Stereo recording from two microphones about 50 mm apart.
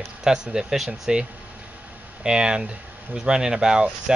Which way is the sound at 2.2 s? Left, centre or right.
Centre.